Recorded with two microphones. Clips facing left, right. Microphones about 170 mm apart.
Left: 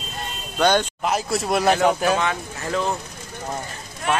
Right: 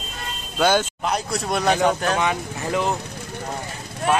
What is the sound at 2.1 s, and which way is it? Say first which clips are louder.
Speech: right 1 dB; 15° right (ahead or behind).